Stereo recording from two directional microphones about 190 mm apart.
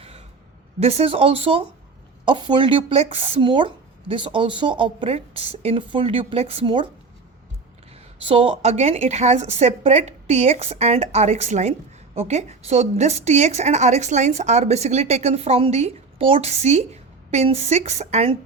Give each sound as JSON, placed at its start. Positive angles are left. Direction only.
{"t": 0.8, "sound": "speech", "side_deg": -35}
{"t": 8.2, "sound": "speech", "side_deg": -30}